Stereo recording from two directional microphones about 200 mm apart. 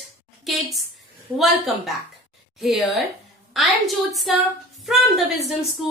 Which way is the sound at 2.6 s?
Centre (ahead or behind).